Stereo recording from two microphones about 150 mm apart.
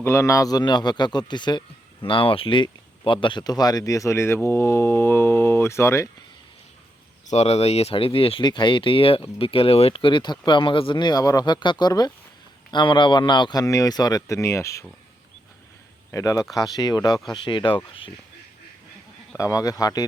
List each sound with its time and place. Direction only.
0.0 s speech: 20° left (ahead or behind)
7.3 s speech: 45° left (ahead or behind); by 14.8 s 20° left (ahead or behind)
16.1 s speech: 20° left (ahead or behind)
19.4 s speech: 20° left (ahead or behind)